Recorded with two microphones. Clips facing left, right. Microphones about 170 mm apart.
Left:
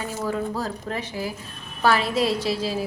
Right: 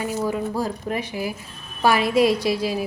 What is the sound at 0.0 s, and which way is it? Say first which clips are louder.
A woman's voice: right 3 dB; 15° right (ahead or behind).